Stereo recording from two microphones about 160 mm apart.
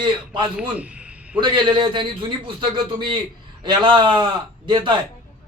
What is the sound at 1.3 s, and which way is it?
A man's voice, 30° right (ahead or behind).